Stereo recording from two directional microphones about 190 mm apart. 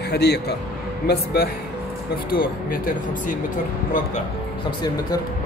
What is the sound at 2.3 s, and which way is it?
Speech, 50° left (ahead or behind).